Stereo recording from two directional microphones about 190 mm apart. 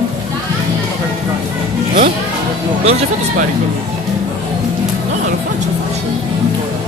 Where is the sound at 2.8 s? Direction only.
35° right (ahead or behind).